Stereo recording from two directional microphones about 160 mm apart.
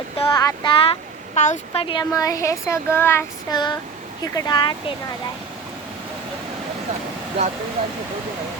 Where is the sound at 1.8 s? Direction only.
25° left (ahead or behind).